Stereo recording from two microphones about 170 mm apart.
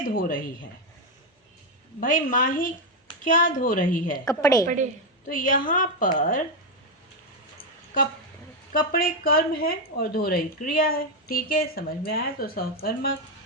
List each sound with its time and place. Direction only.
0.1 s speech: 55° left (ahead or behind)
2.0 s a woman's voice: 55° left (ahead or behind)
4.3 s a woman's voice: 20° left (ahead or behind)
5.3 s a woman's voice: 50° left (ahead or behind)
8.8 s speech: 60° left (ahead or behind)